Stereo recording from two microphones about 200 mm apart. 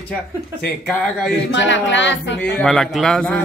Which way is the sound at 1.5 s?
65° left (ahead or behind).